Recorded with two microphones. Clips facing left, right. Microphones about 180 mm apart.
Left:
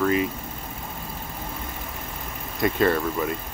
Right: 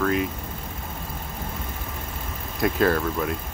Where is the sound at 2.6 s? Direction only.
Centre (ahead or behind).